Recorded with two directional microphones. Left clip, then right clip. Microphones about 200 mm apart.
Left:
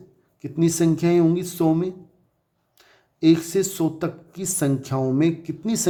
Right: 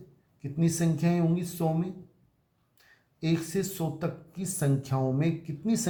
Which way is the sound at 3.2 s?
40° left (ahead or behind).